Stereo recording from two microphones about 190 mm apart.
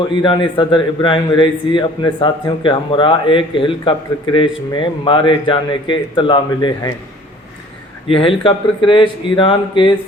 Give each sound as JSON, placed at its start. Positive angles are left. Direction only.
{"t": 0.2, "sound": "a man's voice", "side_deg": 25}
{"t": 8.0, "sound": "a man's voice", "side_deg": 30}